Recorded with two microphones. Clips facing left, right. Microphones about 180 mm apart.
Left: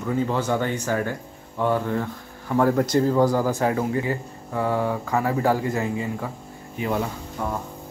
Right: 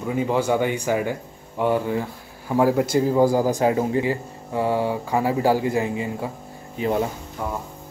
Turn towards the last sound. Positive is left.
turn(degrees=-10)  # may be behind; listen again after turning